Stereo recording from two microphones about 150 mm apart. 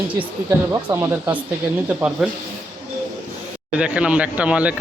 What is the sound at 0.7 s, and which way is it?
Speech, 15° right (ahead or behind).